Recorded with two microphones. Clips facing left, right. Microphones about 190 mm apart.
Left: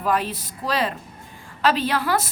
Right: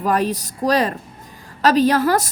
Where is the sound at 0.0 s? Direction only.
45° right (ahead or behind).